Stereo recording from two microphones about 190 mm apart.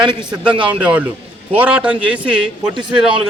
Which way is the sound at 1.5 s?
5° right (ahead or behind).